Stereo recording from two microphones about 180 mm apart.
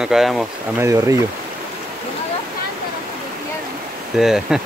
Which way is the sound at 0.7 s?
15° right (ahead or behind).